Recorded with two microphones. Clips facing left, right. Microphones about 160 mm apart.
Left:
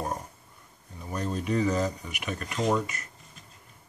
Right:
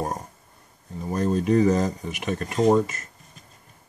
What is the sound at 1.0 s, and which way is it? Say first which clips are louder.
Speech: right 8 dB; 40° right (ahead or behind).